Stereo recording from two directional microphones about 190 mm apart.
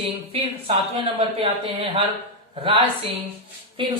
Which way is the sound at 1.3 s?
30° right (ahead or behind).